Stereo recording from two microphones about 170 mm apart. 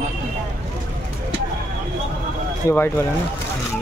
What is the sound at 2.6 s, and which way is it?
Speech, 15° left (ahead or behind).